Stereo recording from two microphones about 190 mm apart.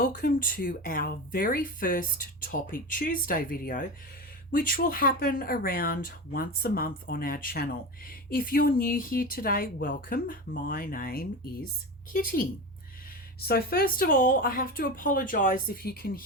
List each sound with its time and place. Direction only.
0.0 s speech: 50° left (ahead or behind)